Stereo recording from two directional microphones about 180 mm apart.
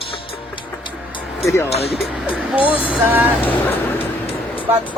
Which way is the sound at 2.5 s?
10° right (ahead or behind).